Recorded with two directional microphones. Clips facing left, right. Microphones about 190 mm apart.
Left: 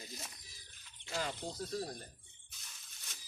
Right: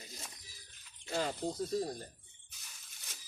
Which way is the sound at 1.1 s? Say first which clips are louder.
Right 4 dB; 35° right (ahead or behind).